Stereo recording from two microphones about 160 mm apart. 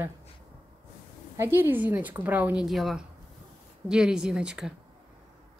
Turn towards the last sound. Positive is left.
turn(degrees=-5)  # may be behind; listen again after turning